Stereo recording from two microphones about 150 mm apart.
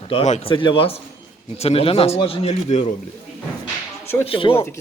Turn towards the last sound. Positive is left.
turn(degrees=35)  # may be behind; listen again after turning